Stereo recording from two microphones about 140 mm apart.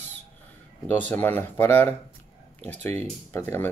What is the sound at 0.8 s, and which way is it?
Speech, 15° left (ahead or behind).